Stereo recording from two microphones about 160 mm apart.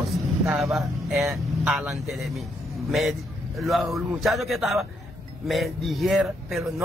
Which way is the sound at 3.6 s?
Centre (ahead or behind).